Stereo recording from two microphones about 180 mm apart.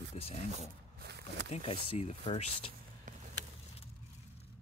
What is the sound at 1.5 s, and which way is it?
Speech, 35° left (ahead or behind).